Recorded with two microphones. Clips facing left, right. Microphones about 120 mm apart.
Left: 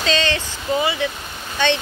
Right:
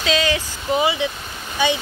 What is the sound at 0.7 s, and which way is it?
Speech, 20° right (ahead or behind).